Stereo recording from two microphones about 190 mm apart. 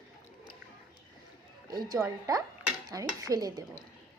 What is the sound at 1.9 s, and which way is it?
Speech, 20° right (ahead or behind).